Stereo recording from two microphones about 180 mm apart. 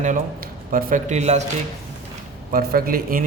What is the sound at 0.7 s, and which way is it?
Speech, 50° right (ahead or behind).